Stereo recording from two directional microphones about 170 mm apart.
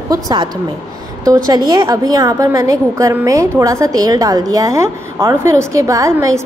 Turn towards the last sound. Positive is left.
turn(degrees=-15)  # may be behind; listen again after turning